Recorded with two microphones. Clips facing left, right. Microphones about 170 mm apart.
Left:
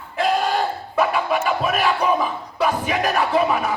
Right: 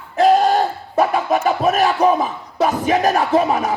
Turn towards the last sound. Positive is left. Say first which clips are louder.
# right 3 dB
turn(degrees=-40)  # may be behind; listen again after turning